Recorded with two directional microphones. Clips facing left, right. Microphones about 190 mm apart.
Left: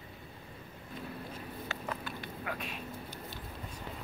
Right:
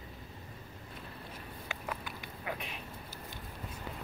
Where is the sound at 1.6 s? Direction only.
15° right (ahead or behind).